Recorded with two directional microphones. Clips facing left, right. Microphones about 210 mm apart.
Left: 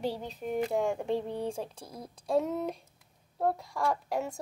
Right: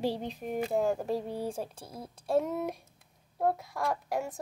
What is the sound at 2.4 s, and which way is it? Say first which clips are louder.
Speech: even; 10° right (ahead or behind).